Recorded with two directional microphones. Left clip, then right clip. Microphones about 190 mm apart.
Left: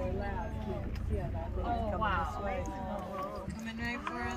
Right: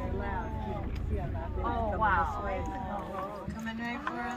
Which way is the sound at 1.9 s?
65° left (ahead or behind).